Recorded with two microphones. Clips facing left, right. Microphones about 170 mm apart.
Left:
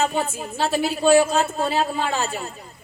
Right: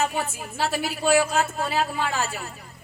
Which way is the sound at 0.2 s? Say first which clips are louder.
Left 3 dB; 25° left (ahead or behind).